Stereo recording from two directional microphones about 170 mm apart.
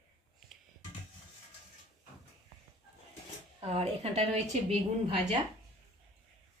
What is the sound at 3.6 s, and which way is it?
Speech, 35° right (ahead or behind).